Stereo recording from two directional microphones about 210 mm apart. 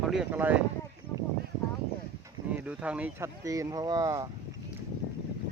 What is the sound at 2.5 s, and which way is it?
Speech, 5° right (ahead or behind).